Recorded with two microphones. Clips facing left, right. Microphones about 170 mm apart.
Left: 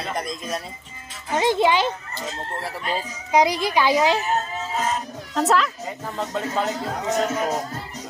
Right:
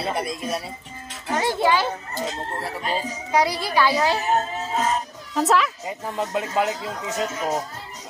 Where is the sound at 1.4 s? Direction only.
20° left (ahead or behind).